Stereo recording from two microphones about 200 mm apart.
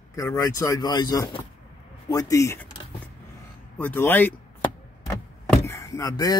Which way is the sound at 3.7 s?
10° left (ahead or behind).